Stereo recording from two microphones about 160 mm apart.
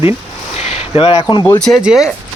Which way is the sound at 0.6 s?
40° left (ahead or behind).